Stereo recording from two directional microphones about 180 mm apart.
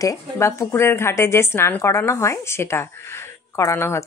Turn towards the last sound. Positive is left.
turn(degrees=15)  # may be behind; listen again after turning